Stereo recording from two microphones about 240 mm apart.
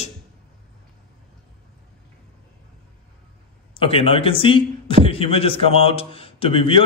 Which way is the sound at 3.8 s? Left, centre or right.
Left.